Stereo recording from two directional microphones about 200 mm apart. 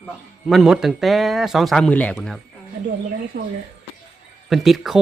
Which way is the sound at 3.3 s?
60° right (ahead or behind).